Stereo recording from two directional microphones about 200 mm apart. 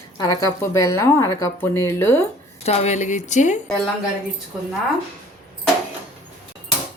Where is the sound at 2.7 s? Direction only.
35° left (ahead or behind).